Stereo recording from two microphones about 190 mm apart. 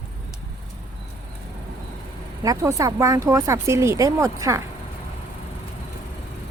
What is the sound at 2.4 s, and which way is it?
Speech, 15° right (ahead or behind).